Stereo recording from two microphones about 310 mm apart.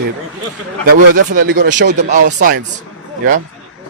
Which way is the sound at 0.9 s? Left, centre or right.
Right.